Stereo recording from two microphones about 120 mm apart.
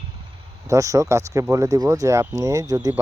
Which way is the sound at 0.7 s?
25° right (ahead or behind).